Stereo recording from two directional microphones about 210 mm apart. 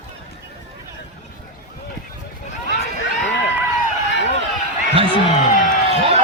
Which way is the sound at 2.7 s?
55° left (ahead or behind).